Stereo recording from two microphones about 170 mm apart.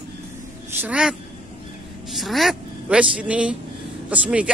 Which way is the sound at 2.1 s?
Centre (ahead or behind).